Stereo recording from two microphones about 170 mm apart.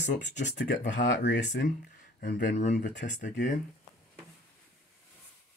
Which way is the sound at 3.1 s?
50° left (ahead or behind).